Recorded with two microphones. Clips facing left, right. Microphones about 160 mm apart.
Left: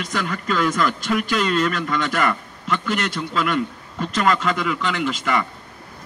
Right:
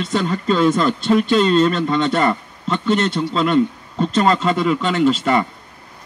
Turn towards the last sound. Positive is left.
turn(degrees=-25)  # may be behind; listen again after turning